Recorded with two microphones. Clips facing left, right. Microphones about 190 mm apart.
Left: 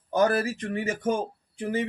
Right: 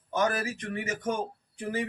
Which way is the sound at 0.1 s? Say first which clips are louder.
Left 5 dB; 35° left (ahead or behind).